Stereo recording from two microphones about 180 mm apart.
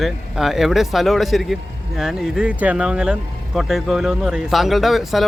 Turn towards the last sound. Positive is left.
turn(degrees=0)  # may be behind; listen again after turning